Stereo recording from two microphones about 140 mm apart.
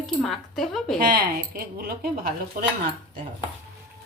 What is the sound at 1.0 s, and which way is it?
Speech, 90° right.